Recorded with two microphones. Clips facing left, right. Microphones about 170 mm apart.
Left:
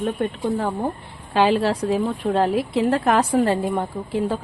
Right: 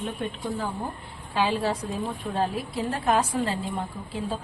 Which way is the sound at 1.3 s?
75° left (ahead or behind).